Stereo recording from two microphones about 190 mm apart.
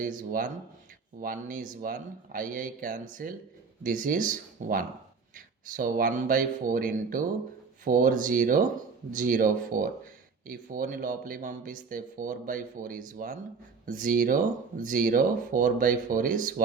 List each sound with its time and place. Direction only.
0.0 s speech: 45° right (ahead or behind)